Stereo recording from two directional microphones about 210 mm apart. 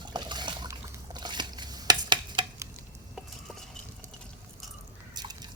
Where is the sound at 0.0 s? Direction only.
20° right (ahead or behind).